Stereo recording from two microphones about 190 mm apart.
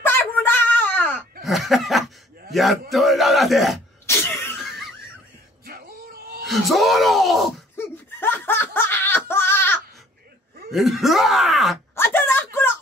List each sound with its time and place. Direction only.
0.0 s a sound: 10° left (ahead or behind)
1.4 s chuckle: centre (ahead or behind)
2.5 s speech: centre (ahead or behind)
4.0 s sneeze: 15° left (ahead or behind)
5.7 s music: 50° right (ahead or behind)
6.4 s speech: centre (ahead or behind)
7.7 s snicker: 10° left (ahead or behind)
10.7 s speech: centre (ahead or behind)
11.9 s a sound: 10° left (ahead or behind)